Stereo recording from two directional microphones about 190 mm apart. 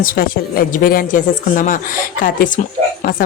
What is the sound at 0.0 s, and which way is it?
Speech, 50° left (ahead or behind).